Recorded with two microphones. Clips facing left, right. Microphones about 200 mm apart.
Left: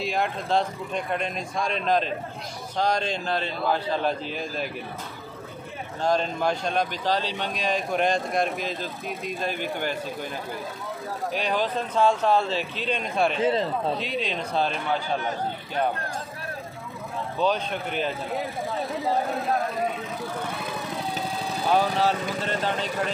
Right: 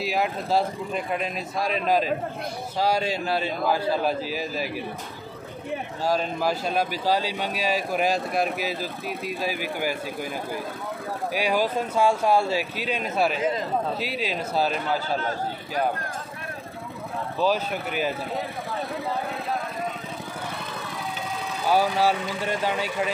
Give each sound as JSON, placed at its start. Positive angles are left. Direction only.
{"t": 0.0, "sound": "a man's voice", "side_deg": -5}
{"t": 6.0, "sound": "a man's voice", "side_deg": -5}
{"t": 11.3, "sound": "a man's voice", "side_deg": -10}
{"t": 13.4, "sound": "speech", "side_deg": 30}
{"t": 13.9, "sound": "speech", "side_deg": -5}
{"t": 15.1, "sound": "a man's voice", "side_deg": 20}
{"t": 17.4, "sound": "a man's voice", "side_deg": -5}
{"t": 21.7, "sound": "a man's voice", "side_deg": -10}